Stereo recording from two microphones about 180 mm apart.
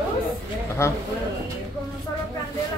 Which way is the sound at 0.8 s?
15° left (ahead or behind).